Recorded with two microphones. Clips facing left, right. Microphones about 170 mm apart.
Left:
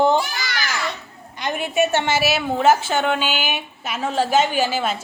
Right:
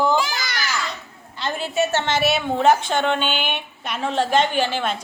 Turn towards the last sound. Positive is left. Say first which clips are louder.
# left 1 dB
turn(degrees=5)  # may be behind; listen again after turning